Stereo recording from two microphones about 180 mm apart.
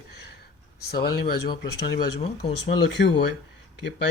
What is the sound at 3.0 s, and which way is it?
Speech, 75° left (ahead or behind).